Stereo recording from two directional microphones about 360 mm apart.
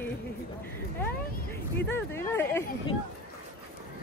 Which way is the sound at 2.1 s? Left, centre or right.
Centre.